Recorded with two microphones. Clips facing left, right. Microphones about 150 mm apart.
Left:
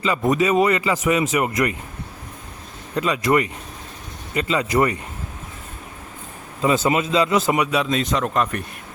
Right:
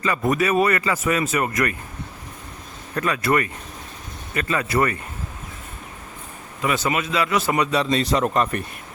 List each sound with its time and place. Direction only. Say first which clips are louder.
0.0 s speech: left 2 dB; 15° left (ahead or behind)
2.9 s speech: left 2 dB; 15° left (ahead or behind)
6.6 s speech: left 4 dB; 25° left (ahead or behind)
7.7 s speech: right 1 dB; 5° left (ahead or behind)